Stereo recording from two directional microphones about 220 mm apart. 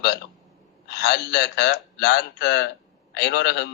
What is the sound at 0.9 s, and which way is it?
A man's voice, 50° left (ahead or behind).